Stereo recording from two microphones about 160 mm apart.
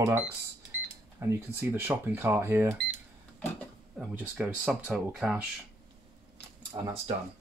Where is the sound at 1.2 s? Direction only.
15° right (ahead or behind).